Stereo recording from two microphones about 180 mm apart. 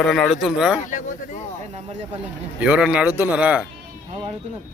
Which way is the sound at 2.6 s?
5° right (ahead or behind).